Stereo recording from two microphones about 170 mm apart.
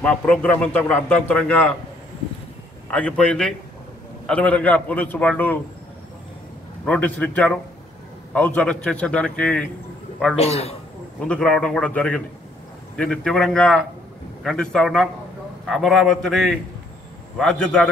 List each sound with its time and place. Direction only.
0.0 s a man's voice: 10° left (ahead or behind)
2.9 s a man's voice: 5° left (ahead or behind)
6.9 s a man's voice: 10° left (ahead or behind)
10.3 s a man's voice: 35° left (ahead or behind)
11.1 s a man's voice: 5° left (ahead or behind)